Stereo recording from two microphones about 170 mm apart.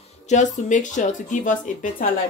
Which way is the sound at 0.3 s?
45° left (ahead or behind).